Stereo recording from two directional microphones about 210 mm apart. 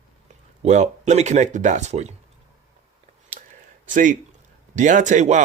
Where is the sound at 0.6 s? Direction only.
35° right (ahead or behind).